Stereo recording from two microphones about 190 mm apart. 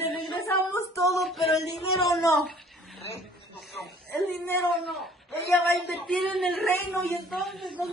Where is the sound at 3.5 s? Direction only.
Centre (ahead or behind).